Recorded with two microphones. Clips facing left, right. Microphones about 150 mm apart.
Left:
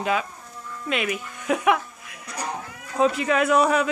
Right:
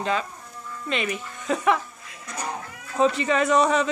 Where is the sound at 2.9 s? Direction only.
5° left (ahead or behind).